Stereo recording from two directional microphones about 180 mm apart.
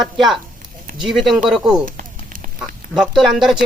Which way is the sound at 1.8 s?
50° right (ahead or behind).